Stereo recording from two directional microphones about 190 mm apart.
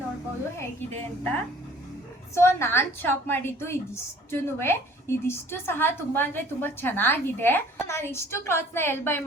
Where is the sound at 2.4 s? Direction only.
15° left (ahead or behind).